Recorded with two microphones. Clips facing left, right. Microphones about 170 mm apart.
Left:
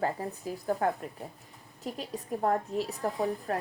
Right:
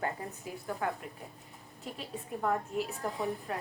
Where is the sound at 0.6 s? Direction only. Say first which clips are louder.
Left 6 dB; 40° left (ahead or behind).